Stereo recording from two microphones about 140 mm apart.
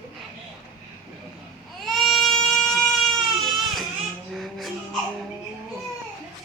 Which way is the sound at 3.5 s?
Centre (ahead or behind).